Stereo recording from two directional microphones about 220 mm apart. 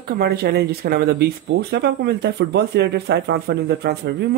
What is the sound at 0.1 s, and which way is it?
Speech, 45° right (ahead or behind).